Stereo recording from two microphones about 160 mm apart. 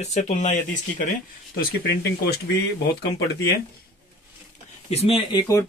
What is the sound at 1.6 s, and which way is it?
Speech, 85° left.